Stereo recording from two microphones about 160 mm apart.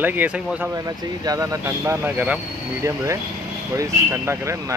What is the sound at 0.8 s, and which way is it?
Speech, 20° right (ahead or behind).